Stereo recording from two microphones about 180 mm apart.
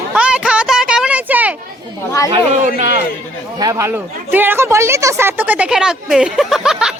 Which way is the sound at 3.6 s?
15° right (ahead or behind).